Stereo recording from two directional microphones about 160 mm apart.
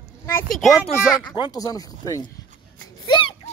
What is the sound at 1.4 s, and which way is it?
Speech, 25° left (ahead or behind).